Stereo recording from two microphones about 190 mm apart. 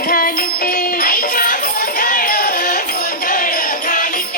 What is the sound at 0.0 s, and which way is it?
Music, 50° left (ahead or behind).